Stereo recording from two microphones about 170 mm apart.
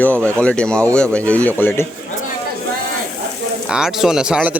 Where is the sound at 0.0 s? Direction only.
10° left (ahead or behind).